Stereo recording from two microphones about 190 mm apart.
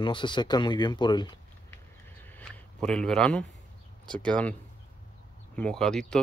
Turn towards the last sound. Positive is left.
turn(degrees=5)  # may be behind; listen again after turning